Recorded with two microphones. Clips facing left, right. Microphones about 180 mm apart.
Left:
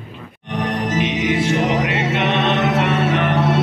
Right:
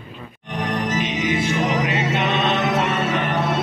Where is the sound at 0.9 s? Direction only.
70° left (ahead or behind).